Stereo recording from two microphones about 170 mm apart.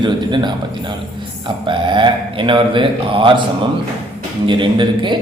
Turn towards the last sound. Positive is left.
turn(degrees=-30)  # may be behind; listen again after turning